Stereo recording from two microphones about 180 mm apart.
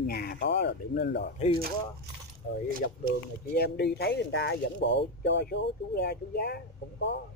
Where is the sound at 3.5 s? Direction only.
60° left (ahead or behind).